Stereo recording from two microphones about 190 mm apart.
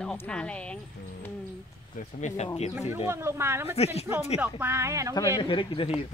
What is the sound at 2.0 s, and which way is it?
Speech, 40° left (ahead or behind).